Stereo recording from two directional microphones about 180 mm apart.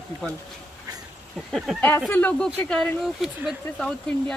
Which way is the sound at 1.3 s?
Centre (ahead or behind).